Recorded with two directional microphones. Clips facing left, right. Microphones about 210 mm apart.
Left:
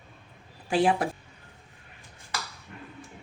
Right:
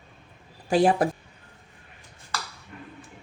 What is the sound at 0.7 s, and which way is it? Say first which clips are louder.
Speech: right 4 dB; 40° right (ahead or behind).